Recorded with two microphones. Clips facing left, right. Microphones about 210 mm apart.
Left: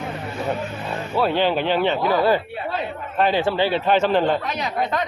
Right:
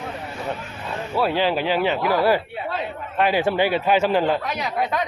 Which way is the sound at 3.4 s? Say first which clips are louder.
Even; 15° right (ahead or behind).